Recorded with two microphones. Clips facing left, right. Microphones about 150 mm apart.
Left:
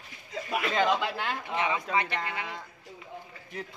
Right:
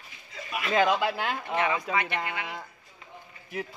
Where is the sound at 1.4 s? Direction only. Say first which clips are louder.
Right 3 dB; 20° left (ahead or behind).